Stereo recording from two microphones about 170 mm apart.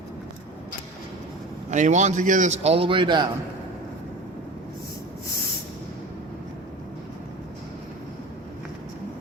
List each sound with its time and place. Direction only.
1.7 s a man's voice: 45° right (ahead or behind); by 3.2 s 25° right (ahead or behind)